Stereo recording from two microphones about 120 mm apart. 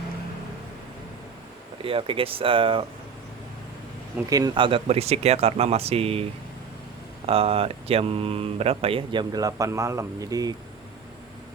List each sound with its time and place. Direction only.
1.8 s speech: 50° right (ahead or behind)
4.3 s speech: 35° right (ahead or behind); by 6.2 s 55° right (ahead or behind)
7.3 s speech: 55° right (ahead or behind)
9.3 s speech: 30° right (ahead or behind)